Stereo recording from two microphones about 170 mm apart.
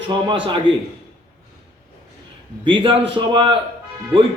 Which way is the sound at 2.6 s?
30° right (ahead or behind).